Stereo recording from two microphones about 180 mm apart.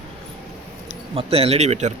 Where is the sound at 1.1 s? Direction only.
35° right (ahead or behind).